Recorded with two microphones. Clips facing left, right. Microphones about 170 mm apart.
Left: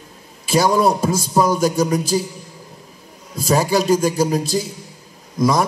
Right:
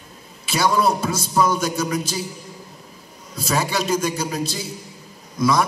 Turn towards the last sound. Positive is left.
turn(degrees=45)  # may be behind; listen again after turning